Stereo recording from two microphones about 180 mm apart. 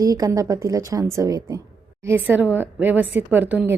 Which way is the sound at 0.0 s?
20° right (ahead or behind).